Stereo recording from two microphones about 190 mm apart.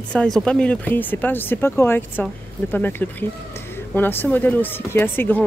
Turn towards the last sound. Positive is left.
turn(degrees=10)  # may be behind; listen again after turning